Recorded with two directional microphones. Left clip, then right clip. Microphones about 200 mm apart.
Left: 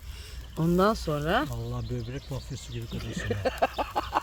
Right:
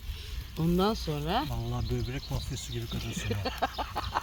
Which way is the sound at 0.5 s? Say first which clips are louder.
Left 4 dB; 50° left (ahead or behind).